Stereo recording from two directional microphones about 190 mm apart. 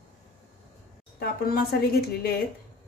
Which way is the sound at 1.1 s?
55° left (ahead or behind).